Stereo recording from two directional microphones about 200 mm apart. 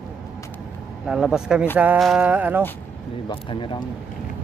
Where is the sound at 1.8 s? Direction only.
5° right (ahead or behind).